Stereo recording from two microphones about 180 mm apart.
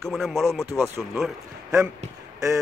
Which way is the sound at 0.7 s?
15° right (ahead or behind).